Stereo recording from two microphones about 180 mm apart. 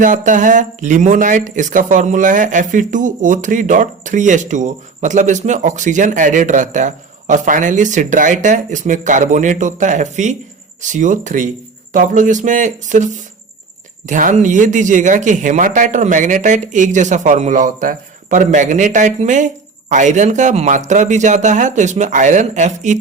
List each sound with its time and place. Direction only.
0.0 s speech: 45° right (ahead or behind)
14.1 s speech: 45° right (ahead or behind)